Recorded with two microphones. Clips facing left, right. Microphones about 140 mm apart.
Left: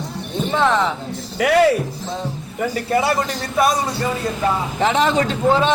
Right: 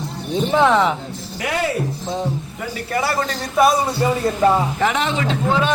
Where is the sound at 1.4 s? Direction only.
75° left (ahead or behind).